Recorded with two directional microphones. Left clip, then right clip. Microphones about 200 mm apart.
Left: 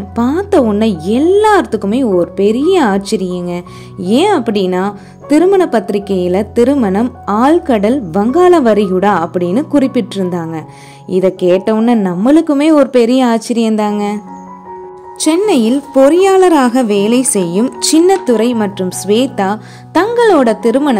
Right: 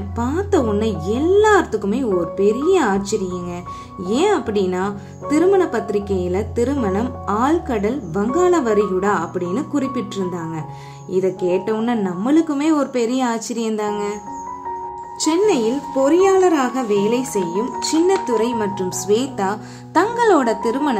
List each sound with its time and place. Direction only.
0.1 s a woman's voice: 40° left (ahead or behind)